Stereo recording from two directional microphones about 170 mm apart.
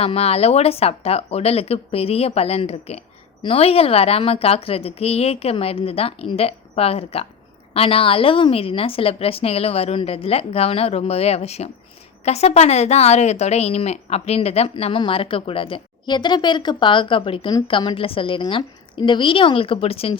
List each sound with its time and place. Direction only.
0.0 s speech: 35° left (ahead or behind)